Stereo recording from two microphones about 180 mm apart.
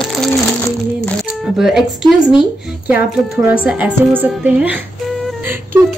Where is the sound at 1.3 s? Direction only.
5° right (ahead or behind).